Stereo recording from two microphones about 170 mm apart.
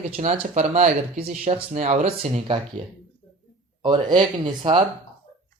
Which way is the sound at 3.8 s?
25° right (ahead or behind).